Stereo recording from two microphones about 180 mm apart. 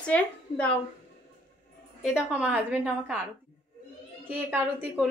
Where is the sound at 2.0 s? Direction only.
5° right (ahead or behind).